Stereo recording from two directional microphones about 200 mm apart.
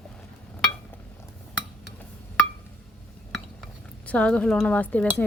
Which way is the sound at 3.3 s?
5° left (ahead or behind).